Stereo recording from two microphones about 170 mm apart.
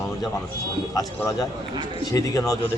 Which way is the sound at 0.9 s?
20° left (ahead or behind).